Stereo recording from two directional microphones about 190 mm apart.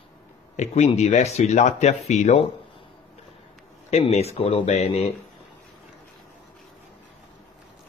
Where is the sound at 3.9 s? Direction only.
35° left (ahead or behind).